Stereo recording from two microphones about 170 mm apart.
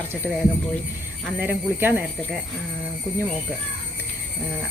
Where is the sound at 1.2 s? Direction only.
10° right (ahead or behind).